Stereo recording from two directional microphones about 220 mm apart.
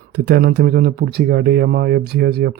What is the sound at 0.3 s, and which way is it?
Speech, 45° right (ahead or behind).